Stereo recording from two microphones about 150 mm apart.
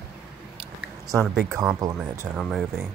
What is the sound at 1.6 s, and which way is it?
Speech, 25° right (ahead or behind).